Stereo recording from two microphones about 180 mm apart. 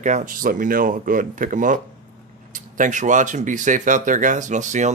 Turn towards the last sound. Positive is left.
turn(degrees=-45)  # may be behind; listen again after turning